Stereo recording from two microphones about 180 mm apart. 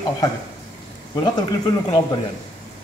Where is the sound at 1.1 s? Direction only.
20° left (ahead or behind).